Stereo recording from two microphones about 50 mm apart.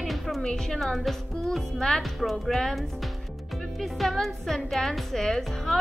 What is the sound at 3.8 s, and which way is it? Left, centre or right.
Speech, centre.